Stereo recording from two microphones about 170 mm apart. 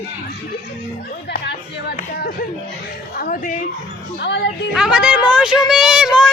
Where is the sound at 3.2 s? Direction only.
55° left (ahead or behind).